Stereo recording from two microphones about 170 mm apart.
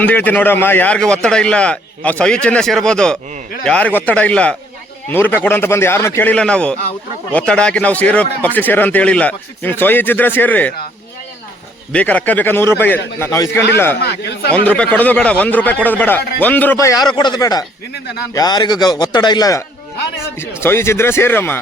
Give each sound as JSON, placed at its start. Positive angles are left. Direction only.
{"t": 0.0, "sound": "a man's voice", "side_deg": 10}
{"t": 11.9, "sound": "speech", "side_deg": 10}
{"t": 14.0, "sound": "speech", "side_deg": 75}
{"t": 14.5, "sound": "a man's voice", "side_deg": 10}